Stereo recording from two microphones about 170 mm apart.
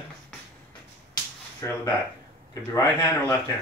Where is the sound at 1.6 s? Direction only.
15° left (ahead or behind).